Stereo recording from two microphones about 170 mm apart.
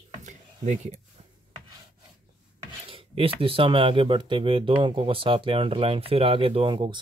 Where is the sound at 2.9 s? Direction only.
35° right (ahead or behind).